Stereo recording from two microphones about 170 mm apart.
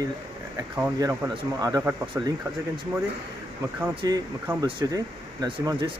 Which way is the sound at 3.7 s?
20° right (ahead or behind).